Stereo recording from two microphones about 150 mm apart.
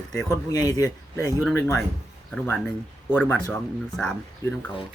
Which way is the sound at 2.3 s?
5° left (ahead or behind).